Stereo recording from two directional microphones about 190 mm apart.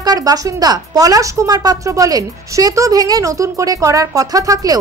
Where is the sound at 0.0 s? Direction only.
20° right (ahead or behind).